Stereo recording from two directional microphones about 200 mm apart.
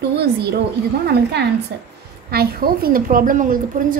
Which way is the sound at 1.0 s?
55° right (ahead or behind).